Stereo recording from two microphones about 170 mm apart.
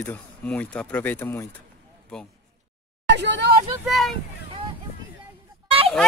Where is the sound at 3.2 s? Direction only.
90° right.